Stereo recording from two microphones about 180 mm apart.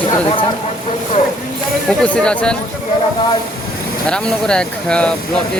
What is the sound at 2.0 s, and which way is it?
Speech, 5° left (ahead or behind).